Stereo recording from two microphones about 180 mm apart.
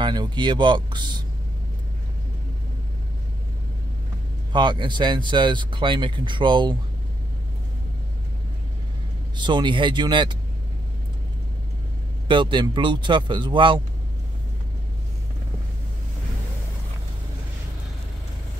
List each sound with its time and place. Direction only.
0.0 s speech: 25° right (ahead or behind)
4.5 s speech: 25° right (ahead or behind)
9.4 s speech: 25° right (ahead or behind)
12.3 s speech: 25° right (ahead or behind)